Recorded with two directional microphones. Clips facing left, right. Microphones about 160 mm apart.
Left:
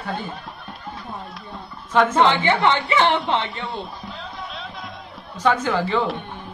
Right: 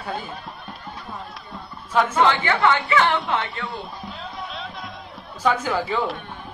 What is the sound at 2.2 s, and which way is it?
Speech, 20° left (ahead or behind).